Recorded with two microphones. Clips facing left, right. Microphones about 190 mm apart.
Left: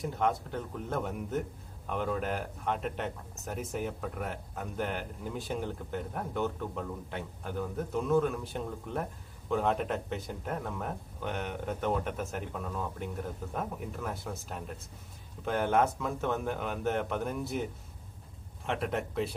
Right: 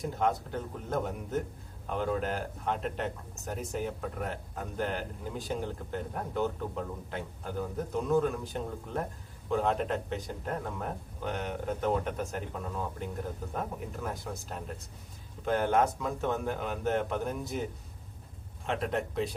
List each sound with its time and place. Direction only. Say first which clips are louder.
0.0 s speech: right 1 dB; centre (ahead or behind)
15.4 s speech: right 1 dB; centre (ahead or behind)